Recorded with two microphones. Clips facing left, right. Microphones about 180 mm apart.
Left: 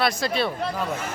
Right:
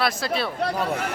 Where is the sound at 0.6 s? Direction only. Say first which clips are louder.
Right 3 dB; 65° right (ahead or behind).